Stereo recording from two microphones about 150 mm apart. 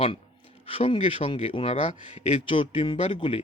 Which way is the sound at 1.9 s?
50° left (ahead or behind).